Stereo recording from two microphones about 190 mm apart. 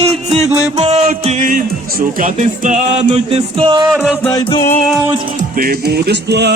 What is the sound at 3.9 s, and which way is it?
Mantra, centre (ahead or behind).